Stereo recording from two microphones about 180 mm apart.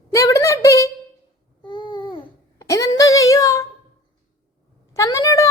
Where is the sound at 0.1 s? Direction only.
20° left (ahead or behind).